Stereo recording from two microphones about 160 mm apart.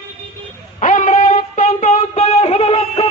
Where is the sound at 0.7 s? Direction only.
50° left (ahead or behind).